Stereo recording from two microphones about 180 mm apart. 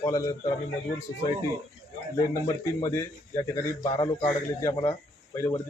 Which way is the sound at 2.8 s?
15° left (ahead or behind).